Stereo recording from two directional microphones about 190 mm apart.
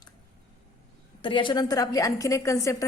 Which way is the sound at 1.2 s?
25° left (ahead or behind).